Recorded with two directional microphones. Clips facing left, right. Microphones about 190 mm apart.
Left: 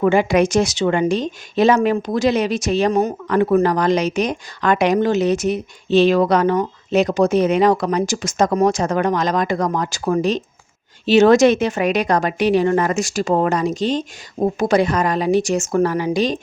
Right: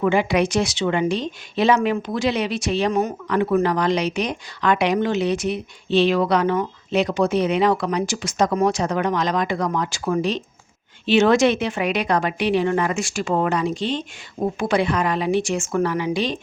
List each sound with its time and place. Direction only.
0.0 s a woman's voice: 45° left (ahead or behind)